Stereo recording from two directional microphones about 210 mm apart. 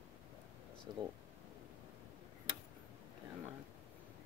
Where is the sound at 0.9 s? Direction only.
20° right (ahead or behind).